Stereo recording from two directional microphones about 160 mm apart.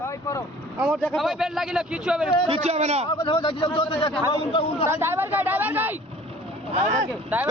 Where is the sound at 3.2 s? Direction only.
30° left (ahead or behind).